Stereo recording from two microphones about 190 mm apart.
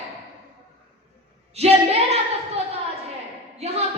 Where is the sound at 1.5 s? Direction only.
35° right (ahead or behind).